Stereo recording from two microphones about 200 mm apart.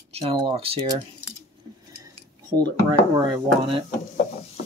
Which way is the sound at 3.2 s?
25° right (ahead or behind).